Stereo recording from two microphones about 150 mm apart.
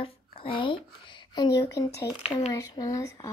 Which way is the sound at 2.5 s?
25° left (ahead or behind).